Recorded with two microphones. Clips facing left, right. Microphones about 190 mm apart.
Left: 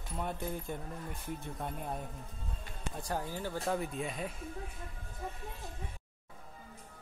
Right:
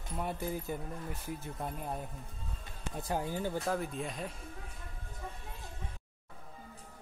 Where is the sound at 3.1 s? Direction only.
15° right (ahead or behind).